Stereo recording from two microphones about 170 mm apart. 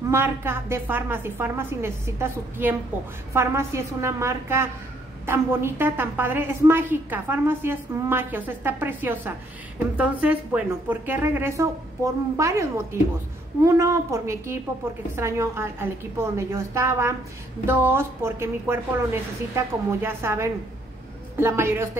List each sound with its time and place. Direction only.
0.1 s a woman's voice: 15° right (ahead or behind)